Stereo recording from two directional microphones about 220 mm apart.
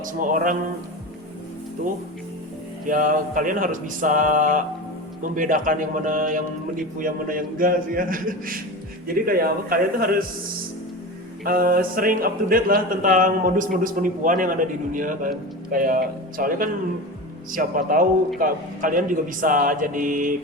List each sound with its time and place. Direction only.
0.0 s speech: 35° right (ahead or behind)
2.8 s speech: 35° right (ahead or behind)
11.4 s speech: 40° right (ahead or behind)